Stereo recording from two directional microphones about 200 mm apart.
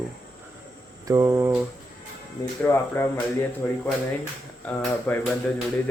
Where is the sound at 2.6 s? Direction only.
10° left (ahead or behind).